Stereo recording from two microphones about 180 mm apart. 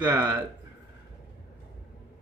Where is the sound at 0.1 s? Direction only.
20° right (ahead or behind).